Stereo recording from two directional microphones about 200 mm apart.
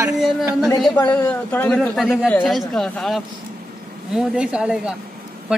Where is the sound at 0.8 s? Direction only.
10° left (ahead or behind).